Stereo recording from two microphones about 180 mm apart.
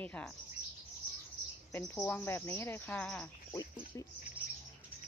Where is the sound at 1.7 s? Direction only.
15° left (ahead or behind).